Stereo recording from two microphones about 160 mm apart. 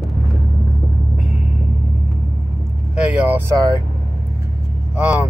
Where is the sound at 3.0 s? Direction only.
10° right (ahead or behind).